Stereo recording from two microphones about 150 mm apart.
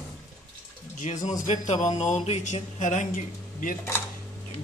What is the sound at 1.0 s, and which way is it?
A man's voice, 55° left (ahead or behind).